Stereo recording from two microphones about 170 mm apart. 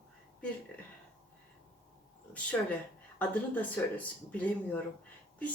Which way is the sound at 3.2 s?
10° left (ahead or behind).